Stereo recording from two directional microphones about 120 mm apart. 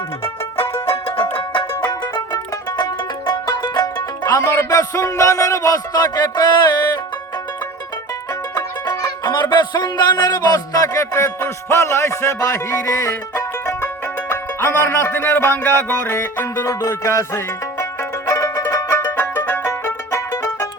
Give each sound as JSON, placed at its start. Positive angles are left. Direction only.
{"t": 1.0, "sound": "music", "side_deg": 45}
{"t": 8.5, "sound": "music", "side_deg": 30}